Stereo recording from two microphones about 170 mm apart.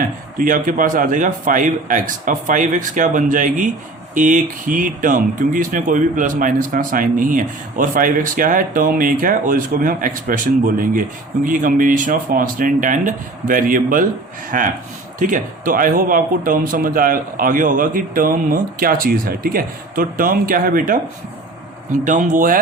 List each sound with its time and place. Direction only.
0.3 s speech: 50° right (ahead or behind)
22.0 s speech: 50° right (ahead or behind)